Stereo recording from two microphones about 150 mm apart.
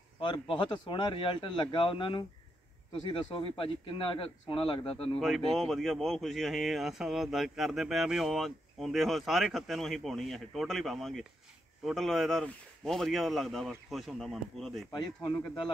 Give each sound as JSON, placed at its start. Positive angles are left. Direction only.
{"t": 0.2, "sound": "speech", "side_deg": 35}
{"t": 5.2, "sound": "speech", "side_deg": 0}
{"t": 14.9, "sound": "speech", "side_deg": 30}